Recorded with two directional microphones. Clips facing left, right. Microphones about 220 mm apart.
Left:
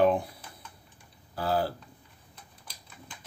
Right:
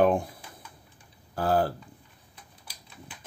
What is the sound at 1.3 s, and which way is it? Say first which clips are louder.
Tick-tock: right 3 dB; 50° right (ahead or behind).